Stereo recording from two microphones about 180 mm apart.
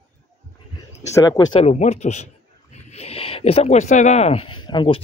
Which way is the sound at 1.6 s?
40° left (ahead or behind).